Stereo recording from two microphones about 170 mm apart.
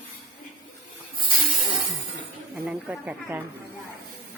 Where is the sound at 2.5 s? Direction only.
10° right (ahead or behind).